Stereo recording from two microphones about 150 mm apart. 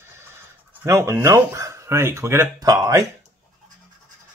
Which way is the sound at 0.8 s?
20° right (ahead or behind).